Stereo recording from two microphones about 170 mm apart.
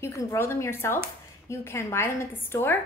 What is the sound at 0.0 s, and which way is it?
A woman's voice, 15° left (ahead or behind).